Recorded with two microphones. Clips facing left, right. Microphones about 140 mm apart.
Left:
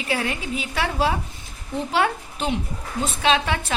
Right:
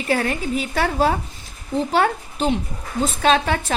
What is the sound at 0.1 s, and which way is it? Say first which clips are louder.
A woman's voice: right 5 dB; 45° right (ahead or behind).